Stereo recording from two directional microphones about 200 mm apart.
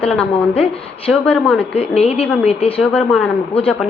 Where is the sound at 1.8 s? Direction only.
30° left (ahead or behind).